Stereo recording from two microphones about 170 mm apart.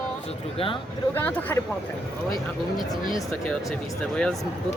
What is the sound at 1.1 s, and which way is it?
Speech, 10° left (ahead or behind).